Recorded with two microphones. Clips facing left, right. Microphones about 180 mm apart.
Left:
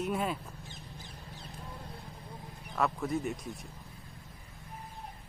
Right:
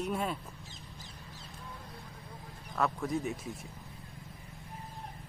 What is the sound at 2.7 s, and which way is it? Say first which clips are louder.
Speech: left 1 dB; centre (ahead or behind).